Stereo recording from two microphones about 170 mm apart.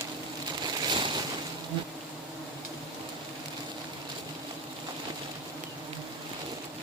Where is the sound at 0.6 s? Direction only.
25° right (ahead or behind).